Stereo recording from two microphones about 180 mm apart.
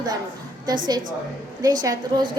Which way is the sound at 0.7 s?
20° right (ahead or behind).